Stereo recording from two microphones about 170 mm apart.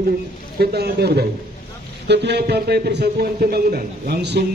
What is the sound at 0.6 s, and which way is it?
A man's voice, 70° right (ahead or behind).